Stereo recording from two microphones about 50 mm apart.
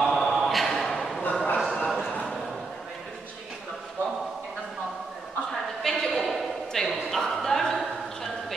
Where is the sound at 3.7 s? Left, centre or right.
Centre.